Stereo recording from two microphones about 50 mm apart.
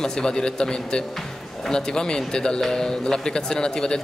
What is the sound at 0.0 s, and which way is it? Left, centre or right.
A man's voice, centre.